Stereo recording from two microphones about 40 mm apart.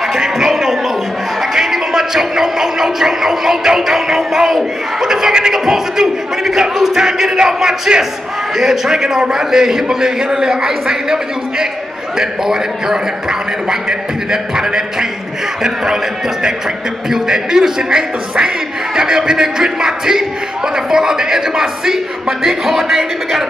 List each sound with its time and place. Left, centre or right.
0.1 s a sound: centre
1.4 s music: centre
4.5 s speech: centre
17.1 s speech: centre